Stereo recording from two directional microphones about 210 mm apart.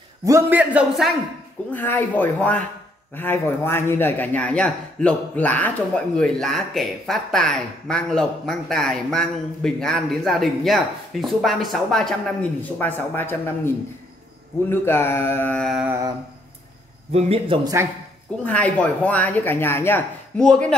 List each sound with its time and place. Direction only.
0.2 s a man's voice: 10° right (ahead or behind)
1.7 s a man's voice: 10° left (ahead or behind)
17.1 s a man's voice: 30° right (ahead or behind)
18.4 s speech: 5° left (ahead or behind)